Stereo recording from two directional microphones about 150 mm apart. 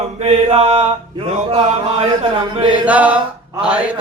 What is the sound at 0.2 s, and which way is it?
Mantra, 45° right (ahead or behind).